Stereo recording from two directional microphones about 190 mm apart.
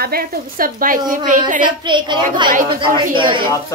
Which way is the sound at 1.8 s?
25° right (ahead or behind).